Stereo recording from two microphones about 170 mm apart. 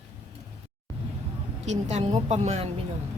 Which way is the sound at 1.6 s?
40° right (ahead or behind).